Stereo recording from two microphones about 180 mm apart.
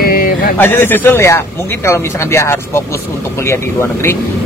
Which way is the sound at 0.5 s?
10° left (ahead or behind).